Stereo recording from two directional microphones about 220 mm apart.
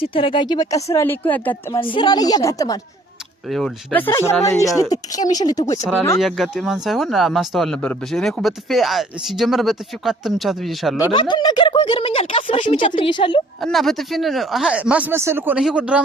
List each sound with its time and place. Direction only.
0.0 s speech: 25° left (ahead or behind); by 1.8 s 10° left (ahead or behind)
1.8 s speech: 20° left (ahead or behind)
3.5 s speech: 5° left (ahead or behind)
6.1 s speech: centre (ahead or behind)
11.1 s speech: 20° left (ahead or behind)
13.6 s speech: centre (ahead or behind)